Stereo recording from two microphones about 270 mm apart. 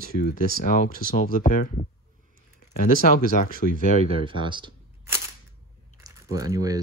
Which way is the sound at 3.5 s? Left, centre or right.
Right.